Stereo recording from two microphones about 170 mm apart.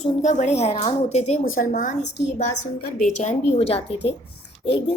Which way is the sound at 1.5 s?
50° left (ahead or behind).